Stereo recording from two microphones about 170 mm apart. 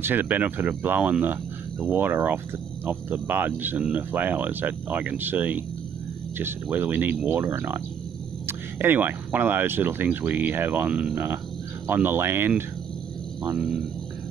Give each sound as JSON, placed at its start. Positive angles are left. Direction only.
{"t": 0.0, "sound": "speech", "side_deg": -10}
{"t": 13.6, "sound": "speech", "side_deg": 0}